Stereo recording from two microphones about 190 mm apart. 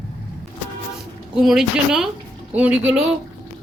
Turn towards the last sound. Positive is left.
turn(degrees=-5)  # may be behind; listen again after turning